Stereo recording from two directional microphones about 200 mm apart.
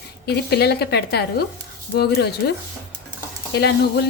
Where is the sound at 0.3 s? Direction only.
55° left (ahead or behind).